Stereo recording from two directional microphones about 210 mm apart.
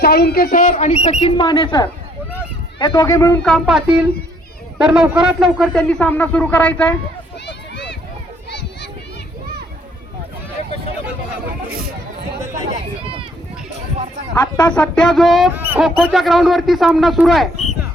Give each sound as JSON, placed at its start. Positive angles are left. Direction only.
{"t": 0.0, "sound": "speech", "side_deg": 50}
{"t": 1.2, "sound": "speech", "side_deg": 20}
{"t": 3.4, "sound": "speech", "side_deg": 0}
{"t": 7.4, "sound": "a sound", "side_deg": 55}
{"t": 12.4, "sound": "chatter", "side_deg": -15}
{"t": 14.3, "sound": "speech", "side_deg": 20}
{"t": 14.7, "sound": "speech", "side_deg": 5}